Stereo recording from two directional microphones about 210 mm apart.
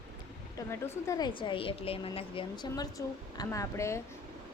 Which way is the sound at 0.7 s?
15° left (ahead or behind).